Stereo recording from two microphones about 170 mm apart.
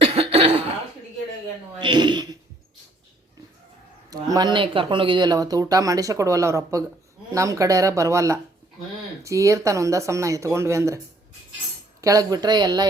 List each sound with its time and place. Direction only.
0.0 s cough: 35° right (ahead or behind)
1.8 s a woman's voice: 25° right (ahead or behind)
4.1 s speech: 20° right (ahead or behind)
12.0 s speech: 20° right (ahead or behind)